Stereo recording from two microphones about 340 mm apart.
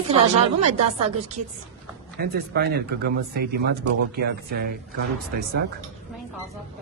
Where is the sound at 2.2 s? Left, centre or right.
Right.